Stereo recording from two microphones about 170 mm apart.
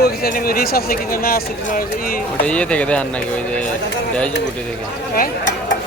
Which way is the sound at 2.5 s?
5° left (ahead or behind).